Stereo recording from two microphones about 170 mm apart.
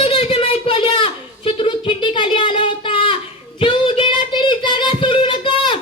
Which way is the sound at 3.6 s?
30° left (ahead or behind).